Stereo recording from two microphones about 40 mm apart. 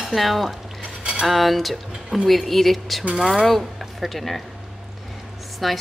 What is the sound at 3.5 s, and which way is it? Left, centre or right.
Speech, centre.